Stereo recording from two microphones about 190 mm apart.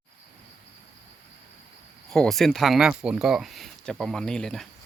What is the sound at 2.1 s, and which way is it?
Speech, centre (ahead or behind).